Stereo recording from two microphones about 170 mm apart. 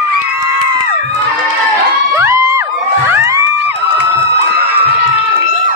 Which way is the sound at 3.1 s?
15° right (ahead or behind).